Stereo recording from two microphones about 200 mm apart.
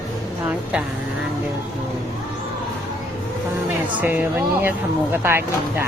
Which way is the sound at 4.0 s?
10° right (ahead or behind).